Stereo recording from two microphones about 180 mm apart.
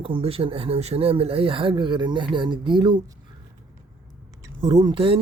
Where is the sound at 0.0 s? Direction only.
30° right (ahead or behind).